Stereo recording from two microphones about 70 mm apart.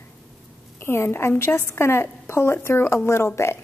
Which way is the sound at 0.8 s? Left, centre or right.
Left.